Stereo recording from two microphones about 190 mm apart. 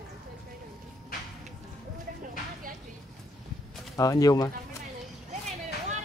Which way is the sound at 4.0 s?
20° left (ahead or behind).